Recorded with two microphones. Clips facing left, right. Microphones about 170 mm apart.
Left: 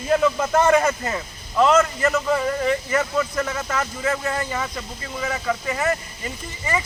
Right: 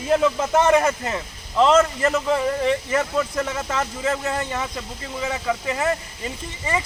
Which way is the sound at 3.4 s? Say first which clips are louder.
Even; 25° right (ahead or behind).